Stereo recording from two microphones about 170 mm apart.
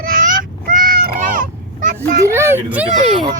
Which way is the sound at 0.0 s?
55° right (ahead or behind).